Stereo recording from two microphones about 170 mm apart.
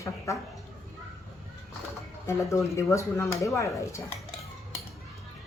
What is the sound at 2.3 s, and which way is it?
Speech, 15° left (ahead or behind).